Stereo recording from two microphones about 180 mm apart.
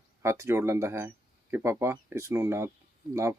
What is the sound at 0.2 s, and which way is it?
Speech, 15° right (ahead or behind).